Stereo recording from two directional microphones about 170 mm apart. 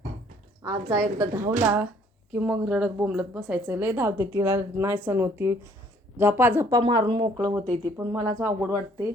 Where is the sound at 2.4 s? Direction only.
5° right (ahead or behind).